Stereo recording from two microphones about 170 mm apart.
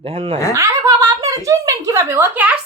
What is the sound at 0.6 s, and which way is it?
Speech, 20° right (ahead or behind).